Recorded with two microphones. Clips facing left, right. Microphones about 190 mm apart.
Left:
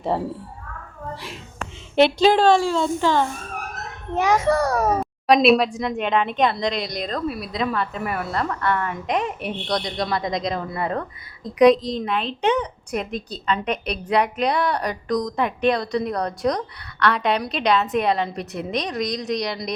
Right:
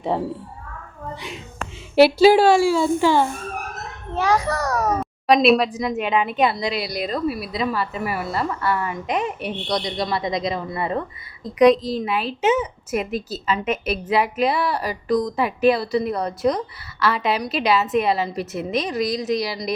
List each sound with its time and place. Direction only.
0.1 s a woman's voice: centre (ahead or behind)
2.0 s speech: 5° right (ahead or behind)
4.1 s a child's voice: 20° left (ahead or behind)
4.9 s a woman's voice: centre (ahead or behind)